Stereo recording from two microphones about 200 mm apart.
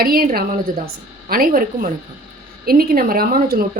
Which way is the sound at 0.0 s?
45° right (ahead or behind).